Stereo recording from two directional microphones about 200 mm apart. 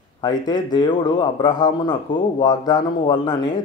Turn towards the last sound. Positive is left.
turn(degrees=20)  # may be behind; listen again after turning